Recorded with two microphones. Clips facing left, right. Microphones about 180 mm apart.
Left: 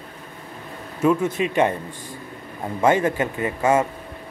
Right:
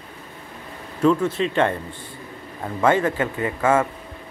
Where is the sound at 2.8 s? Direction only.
20° left (ahead or behind).